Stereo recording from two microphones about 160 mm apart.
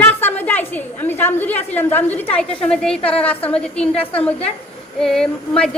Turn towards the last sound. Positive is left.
turn(degrees=5)  # may be behind; listen again after turning